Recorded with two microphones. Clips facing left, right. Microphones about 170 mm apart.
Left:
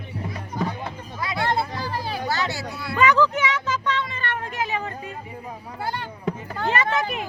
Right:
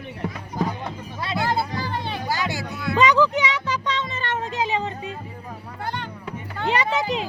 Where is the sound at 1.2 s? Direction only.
25° right (ahead or behind).